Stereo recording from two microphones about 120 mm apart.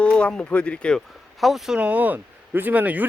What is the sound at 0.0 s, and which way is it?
Speech, 10° left (ahead or behind).